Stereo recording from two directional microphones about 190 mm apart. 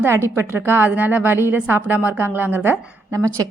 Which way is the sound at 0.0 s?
15° right (ahead or behind).